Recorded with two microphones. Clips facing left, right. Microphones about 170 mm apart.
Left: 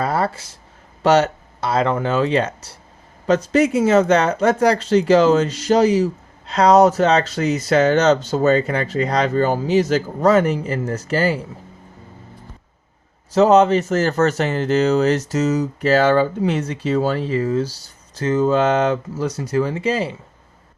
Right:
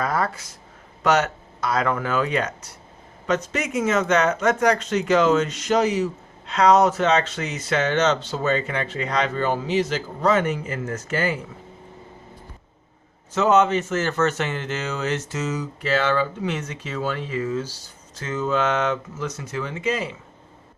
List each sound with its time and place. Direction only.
0.0 s a sound: 30° left (ahead or behind)
1.0 s speech: 30° left (ahead or behind)
13.3 s speech: 35° left (ahead or behind)